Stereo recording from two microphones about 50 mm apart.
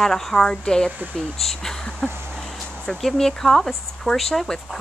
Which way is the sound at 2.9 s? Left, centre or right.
Centre.